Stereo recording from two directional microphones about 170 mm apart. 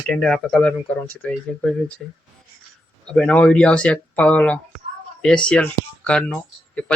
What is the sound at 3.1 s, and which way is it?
Speech, 5° left (ahead or behind).